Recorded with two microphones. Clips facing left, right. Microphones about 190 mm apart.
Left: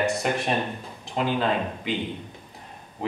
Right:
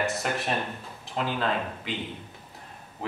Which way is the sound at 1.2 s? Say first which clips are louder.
Left 4 dB; 20° left (ahead or behind).